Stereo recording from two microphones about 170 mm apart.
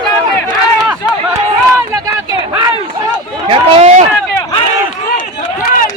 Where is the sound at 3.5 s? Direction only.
35° right (ahead or behind).